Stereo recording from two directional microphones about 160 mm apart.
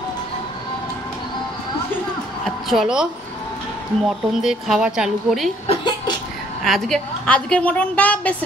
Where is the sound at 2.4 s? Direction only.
Centre (ahead or behind).